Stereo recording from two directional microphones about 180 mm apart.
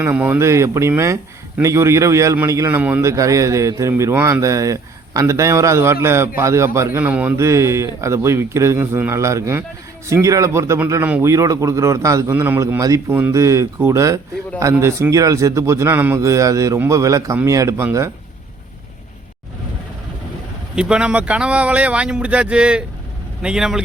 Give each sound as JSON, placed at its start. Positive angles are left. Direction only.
{"t": 0.0, "sound": "a man's voice", "side_deg": -10}
{"t": 20.7, "sound": "a man's voice", "side_deg": -5}